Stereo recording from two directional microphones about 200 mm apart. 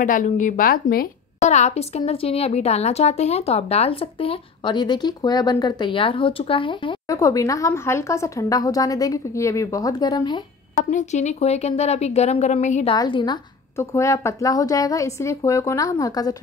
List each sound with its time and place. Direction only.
0.0 s a woman's voice: 40° left (ahead or behind); by 10.4 s 20° left (ahead or behind)
10.8 s speech: 40° left (ahead or behind)
12.9 s a woman's voice: 20° left (ahead or behind)